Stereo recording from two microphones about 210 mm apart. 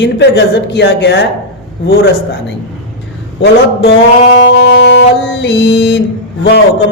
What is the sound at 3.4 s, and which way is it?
Speech, 55° left (ahead or behind).